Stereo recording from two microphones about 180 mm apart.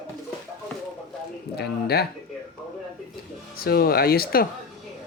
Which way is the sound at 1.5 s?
65° left (ahead or behind).